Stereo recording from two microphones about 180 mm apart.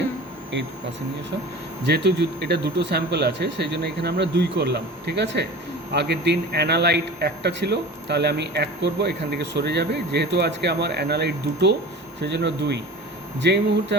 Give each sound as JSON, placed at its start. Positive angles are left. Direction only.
{"t": 0.5, "sound": "a man's voice", "side_deg": -80}
{"t": 1.8, "sound": "a man's voice", "side_deg": -70}